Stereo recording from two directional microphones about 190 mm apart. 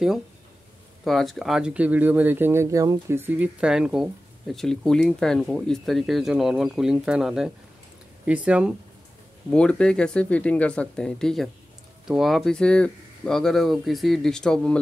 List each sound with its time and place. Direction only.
1.0 s speech: centre (ahead or behind)
9.5 s speech: 5° left (ahead or behind)